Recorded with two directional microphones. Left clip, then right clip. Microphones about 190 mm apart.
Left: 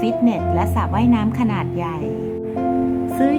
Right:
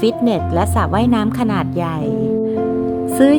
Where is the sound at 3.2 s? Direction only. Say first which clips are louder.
Right 7 dB; 30° right (ahead or behind).